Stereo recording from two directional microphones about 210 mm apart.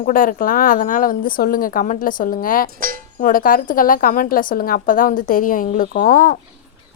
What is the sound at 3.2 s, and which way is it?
A woman's voice, 40° left (ahead or behind).